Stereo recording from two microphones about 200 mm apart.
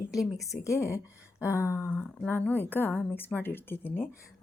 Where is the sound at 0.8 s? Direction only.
10° right (ahead or behind).